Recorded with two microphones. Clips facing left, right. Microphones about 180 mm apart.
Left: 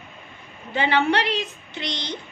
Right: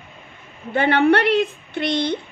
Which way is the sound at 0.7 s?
55° right (ahead or behind).